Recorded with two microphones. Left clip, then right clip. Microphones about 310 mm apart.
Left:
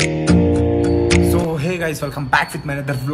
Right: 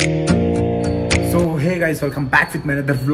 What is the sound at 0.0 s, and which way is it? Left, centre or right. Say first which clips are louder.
Music: left 1 dB; centre.